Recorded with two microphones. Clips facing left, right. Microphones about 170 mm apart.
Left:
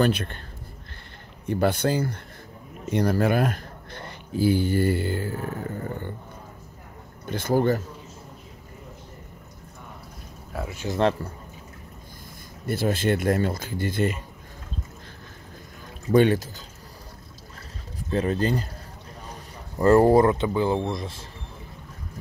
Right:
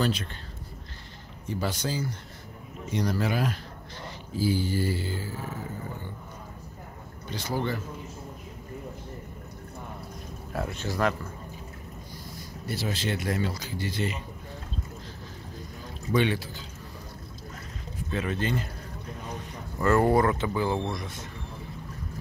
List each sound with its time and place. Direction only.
0.0 s speech: 60° left (ahead or behind)
1.5 s speech: 60° left (ahead or behind)
7.2 s speech: 50° left (ahead or behind)
10.5 s speech: centre (ahead or behind)
12.6 s speech: 50° left (ahead or behind)
16.1 s speech: 45° left (ahead or behind)
18.1 s speech: 35° left (ahead or behind)
19.8 s speech: 35° left (ahead or behind)